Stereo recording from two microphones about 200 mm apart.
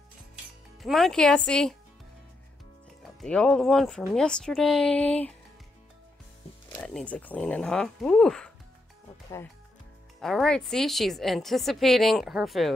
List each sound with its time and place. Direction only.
0.8 s a woman's voice: centre (ahead or behind)
3.0 s a woman's voice: centre (ahead or behind)
6.8 s a woman's voice: 5° left (ahead or behind)
10.2 s a woman's voice: 5° left (ahead or behind)